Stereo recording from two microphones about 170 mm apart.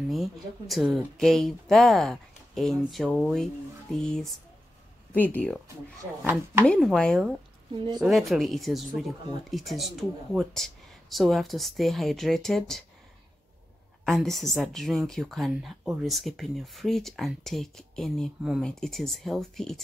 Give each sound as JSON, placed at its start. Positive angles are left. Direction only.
{"t": 0.1, "sound": "speech", "side_deg": 0}
{"t": 6.6, "sound": "speech", "side_deg": 5}
{"t": 7.7, "sound": "speech", "side_deg": -30}
{"t": 8.0, "sound": "speech", "side_deg": 0}
{"t": 14.0, "sound": "speech", "side_deg": 0}